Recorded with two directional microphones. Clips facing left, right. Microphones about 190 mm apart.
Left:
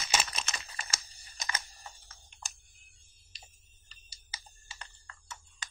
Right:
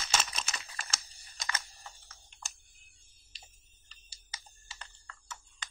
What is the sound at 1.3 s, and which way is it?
Typing, 20° left (ahead or behind).